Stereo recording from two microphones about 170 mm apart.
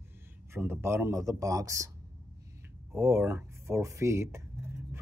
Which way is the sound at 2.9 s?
15° right (ahead or behind).